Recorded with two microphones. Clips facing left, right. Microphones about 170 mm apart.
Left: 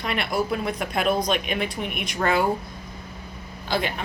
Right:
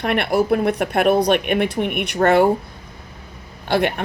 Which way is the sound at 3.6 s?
65° right (ahead or behind).